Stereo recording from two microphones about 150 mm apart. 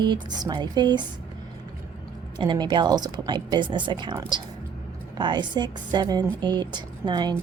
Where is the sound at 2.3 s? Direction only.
30° right (ahead or behind).